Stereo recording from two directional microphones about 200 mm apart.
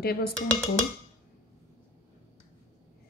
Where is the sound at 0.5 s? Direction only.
5° left (ahead or behind).